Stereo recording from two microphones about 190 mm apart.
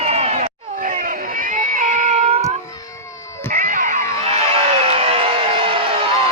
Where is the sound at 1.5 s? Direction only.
45° right (ahead or behind).